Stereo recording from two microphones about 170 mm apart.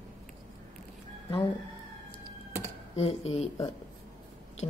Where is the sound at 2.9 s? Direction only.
35° left (ahead or behind).